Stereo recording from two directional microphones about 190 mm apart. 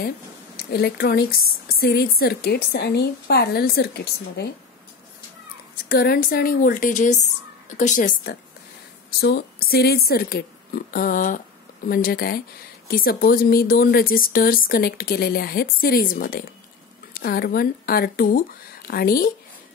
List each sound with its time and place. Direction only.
0.6 s a woman's voice: 55° left (ahead or behind)
5.9 s speech: 50° left (ahead or behind)
9.2 s speech: 55° left (ahead or behind)